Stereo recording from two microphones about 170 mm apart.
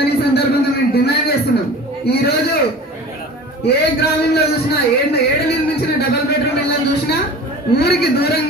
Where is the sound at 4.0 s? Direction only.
70° left (ahead or behind).